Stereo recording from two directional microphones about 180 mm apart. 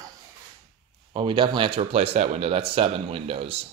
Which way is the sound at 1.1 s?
25° right (ahead or behind).